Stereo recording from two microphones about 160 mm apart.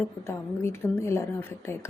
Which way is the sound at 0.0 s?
15° left (ahead or behind).